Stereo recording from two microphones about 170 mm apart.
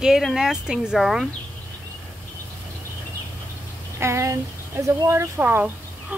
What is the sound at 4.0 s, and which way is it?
Speech, 15° right (ahead or behind).